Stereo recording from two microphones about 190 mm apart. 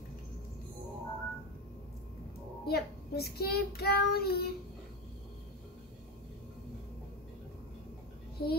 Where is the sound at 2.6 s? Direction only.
55° left (ahead or behind).